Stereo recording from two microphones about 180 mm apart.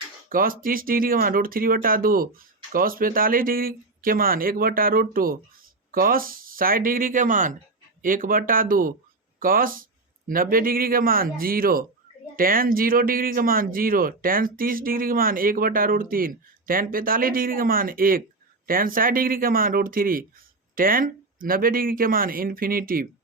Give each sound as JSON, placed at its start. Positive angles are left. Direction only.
{"t": 0.3, "sound": "speech", "side_deg": -50}